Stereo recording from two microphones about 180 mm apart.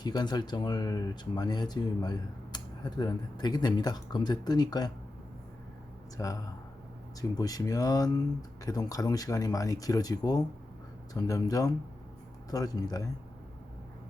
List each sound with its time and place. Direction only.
0.0 s speech: 25° left (ahead or behind)
6.1 s speech: 20° left (ahead or behind)